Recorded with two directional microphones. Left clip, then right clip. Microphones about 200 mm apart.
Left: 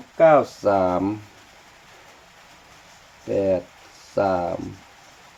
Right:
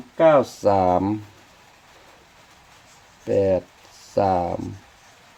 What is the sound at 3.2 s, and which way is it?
Speech, 55° right (ahead or behind).